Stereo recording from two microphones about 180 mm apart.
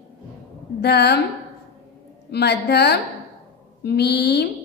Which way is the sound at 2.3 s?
65° left (ahead or behind).